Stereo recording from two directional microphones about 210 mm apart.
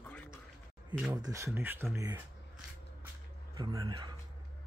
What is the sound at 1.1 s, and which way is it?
Speech, 15° right (ahead or behind).